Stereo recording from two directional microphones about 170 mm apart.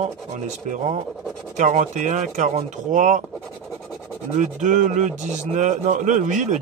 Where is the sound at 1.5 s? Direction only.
45° right (ahead or behind).